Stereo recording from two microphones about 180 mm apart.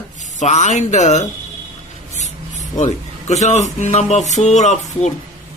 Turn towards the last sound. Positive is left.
turn(degrees=40)  # may be behind; listen again after turning